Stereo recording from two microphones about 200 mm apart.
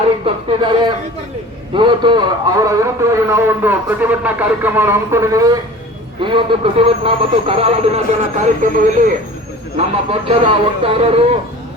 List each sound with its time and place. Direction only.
0.3 s a man's voice: 25° right (ahead or behind)